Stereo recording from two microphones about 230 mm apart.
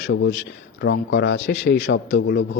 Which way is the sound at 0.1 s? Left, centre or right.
Left.